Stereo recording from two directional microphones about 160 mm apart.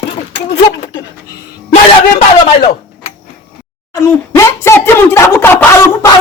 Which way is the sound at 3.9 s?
20° left (ahead or behind).